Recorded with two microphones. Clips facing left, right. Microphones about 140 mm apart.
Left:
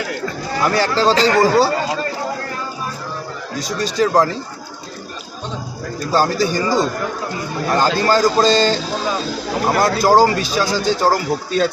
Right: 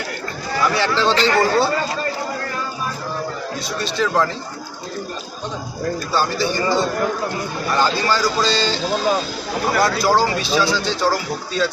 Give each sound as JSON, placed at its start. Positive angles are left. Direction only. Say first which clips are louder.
{"t": 0.6, "sound": "speech", "louder": "left 2 dB", "side_deg": 40}
{"t": 3.6, "sound": "speech", "louder": "left 5 dB", "side_deg": 40}
{"t": 6.1, "sound": "speech", "louder": "left 6 dB", "side_deg": 45}